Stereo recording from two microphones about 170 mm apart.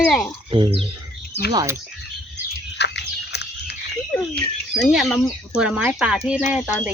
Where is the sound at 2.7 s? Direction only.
90° left.